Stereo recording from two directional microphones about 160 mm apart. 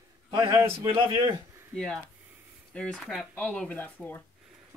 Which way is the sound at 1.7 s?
5° left (ahead or behind).